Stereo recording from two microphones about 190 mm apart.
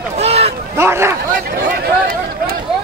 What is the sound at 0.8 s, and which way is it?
Speech, 15° right (ahead or behind).